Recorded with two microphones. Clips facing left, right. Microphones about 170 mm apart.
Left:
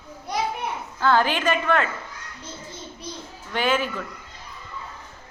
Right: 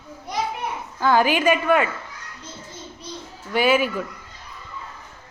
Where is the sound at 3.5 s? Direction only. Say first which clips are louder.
Right 5 dB; 10° right (ahead or behind).